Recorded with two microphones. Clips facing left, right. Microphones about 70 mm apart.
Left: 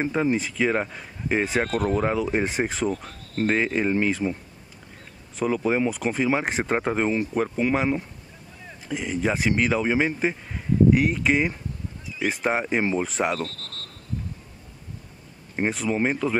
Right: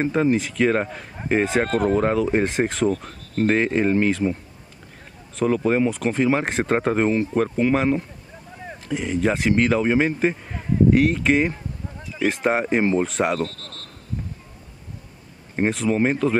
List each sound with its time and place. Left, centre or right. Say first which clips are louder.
0.0 s a man's voice: right 3 dB; centre
1.7 s speech: right 4 dB; right
2.4 s speech: right 4 dB; centre
3.3 s a man's voice: right 3 dB; centre
5.7 s a man's voice: right 3 dB; centre
12.0 s a sound: right 5 dB; right
12.4 s a man's voice: right 3 dB; centre
13.4 s speech: right 4 dB; right
15.5 s a man's voice: right 4 dB; centre